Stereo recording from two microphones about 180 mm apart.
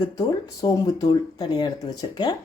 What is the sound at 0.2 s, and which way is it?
Speech, 20° left (ahead or behind).